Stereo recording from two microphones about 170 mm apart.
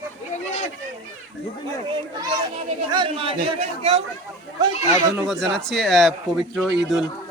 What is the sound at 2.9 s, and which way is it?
Speech, 30° right (ahead or behind).